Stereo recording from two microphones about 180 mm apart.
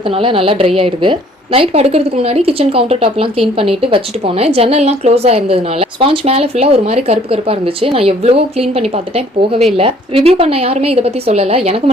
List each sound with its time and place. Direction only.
0.2 s a woman's voice: 30° right (ahead or behind)